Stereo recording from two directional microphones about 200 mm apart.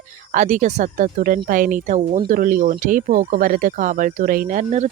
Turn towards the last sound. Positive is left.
turn(degrees=-35)  # may be behind; listen again after turning